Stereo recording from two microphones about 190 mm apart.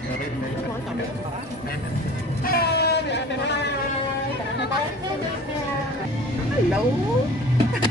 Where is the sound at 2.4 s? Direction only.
55° left (ahead or behind).